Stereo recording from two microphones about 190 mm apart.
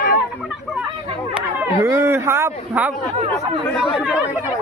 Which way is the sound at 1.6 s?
15° right (ahead or behind).